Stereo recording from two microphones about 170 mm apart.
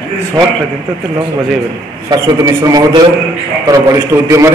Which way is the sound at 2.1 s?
25° right (ahead or behind).